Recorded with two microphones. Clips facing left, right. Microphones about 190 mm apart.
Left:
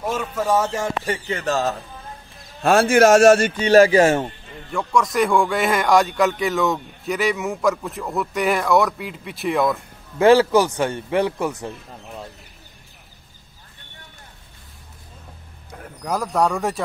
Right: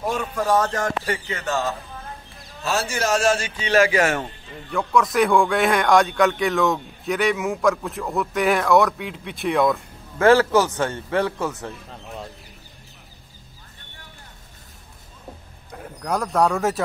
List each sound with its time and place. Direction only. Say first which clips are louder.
0.0 s speech: even; centre (ahead or behind)
1.3 s speech: left 5 dB; 35° left (ahead or behind)
2.6 s speech: left 10 dB; 55° left (ahead or behind); by 4.3 s 30° left (ahead or behind)
4.6 s speech: even; centre (ahead or behind)
10.1 s a man's voice: left 2 dB; 15° left (ahead or behind)
16.0 s speech: even; centre (ahead or behind)